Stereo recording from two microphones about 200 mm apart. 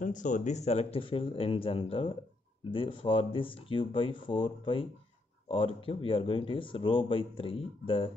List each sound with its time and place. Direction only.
0.0 s speech: 40° left (ahead or behind)